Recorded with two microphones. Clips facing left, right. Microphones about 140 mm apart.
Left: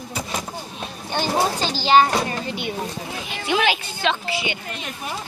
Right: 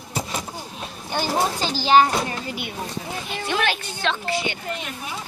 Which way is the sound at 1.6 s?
15° right (ahead or behind).